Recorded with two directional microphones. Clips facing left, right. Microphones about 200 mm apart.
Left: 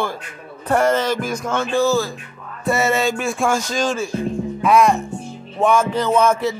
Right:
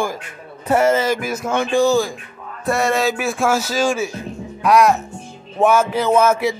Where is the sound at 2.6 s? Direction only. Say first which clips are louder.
Even; centre (ahead or behind).